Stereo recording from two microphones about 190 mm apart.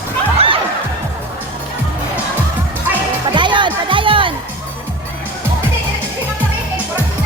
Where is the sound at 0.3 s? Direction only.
30° right (ahead or behind).